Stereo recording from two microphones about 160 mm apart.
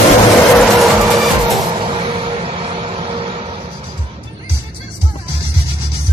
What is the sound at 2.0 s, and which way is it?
Vehicle, 35° right (ahead or behind).